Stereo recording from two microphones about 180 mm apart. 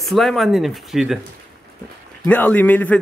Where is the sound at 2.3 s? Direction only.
10° left (ahead or behind).